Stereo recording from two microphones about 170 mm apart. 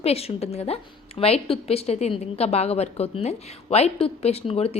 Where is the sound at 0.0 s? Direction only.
35° left (ahead or behind).